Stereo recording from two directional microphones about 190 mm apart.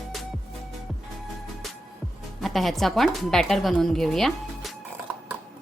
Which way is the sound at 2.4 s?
Centre (ahead or behind).